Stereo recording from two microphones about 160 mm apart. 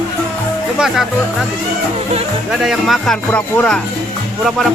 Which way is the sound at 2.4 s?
Centre (ahead or behind).